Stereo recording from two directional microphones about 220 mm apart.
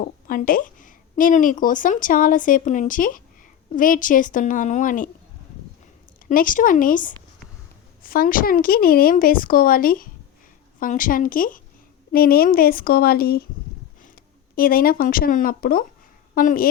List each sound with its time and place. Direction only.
0.0 s a woman's voice: 40° left (ahead or behind)
6.2 s a woman's voice: 40° left (ahead or behind)
14.5 s a woman's voice: 40° left (ahead or behind)